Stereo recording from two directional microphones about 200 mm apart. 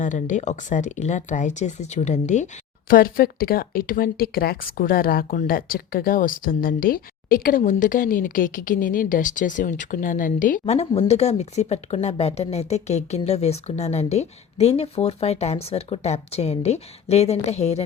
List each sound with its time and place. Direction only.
0.0 s speech: 40° left (ahead or behind)
2.9 s speech: 45° left (ahead or behind)